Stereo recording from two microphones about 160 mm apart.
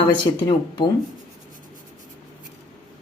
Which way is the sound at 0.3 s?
25° left (ahead or behind).